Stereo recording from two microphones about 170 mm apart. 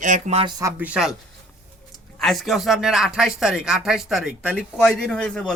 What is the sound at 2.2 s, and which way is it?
Speech, centre (ahead or behind).